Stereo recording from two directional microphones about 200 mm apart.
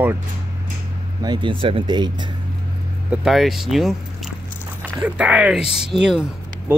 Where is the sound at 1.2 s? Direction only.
20° right (ahead or behind).